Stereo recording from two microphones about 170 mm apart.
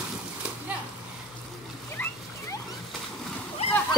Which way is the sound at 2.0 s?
10° left (ahead or behind).